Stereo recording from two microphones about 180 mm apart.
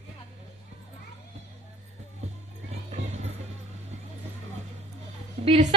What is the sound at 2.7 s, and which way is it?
Music, 35° right (ahead or behind).